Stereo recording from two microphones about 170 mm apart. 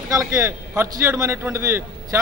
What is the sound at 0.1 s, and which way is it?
Speech, 15° right (ahead or behind).